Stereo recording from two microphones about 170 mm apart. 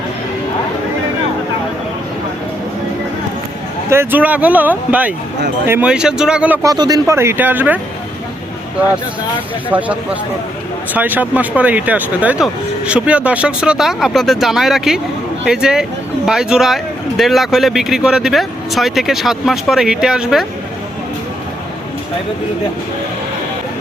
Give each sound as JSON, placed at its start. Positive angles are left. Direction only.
{"t": 3.8, "sound": "speech", "side_deg": -15}
{"t": 6.6, "sound": "speech", "side_deg": -20}
{"t": 9.6, "sound": "speech", "side_deg": -10}